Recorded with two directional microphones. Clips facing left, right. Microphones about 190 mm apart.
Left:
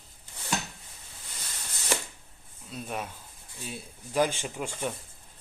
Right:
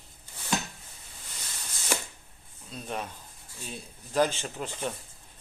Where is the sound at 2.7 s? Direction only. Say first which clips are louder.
Even; 5° left (ahead or behind).